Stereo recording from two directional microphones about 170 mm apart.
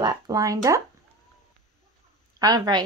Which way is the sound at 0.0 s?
25° right (ahead or behind).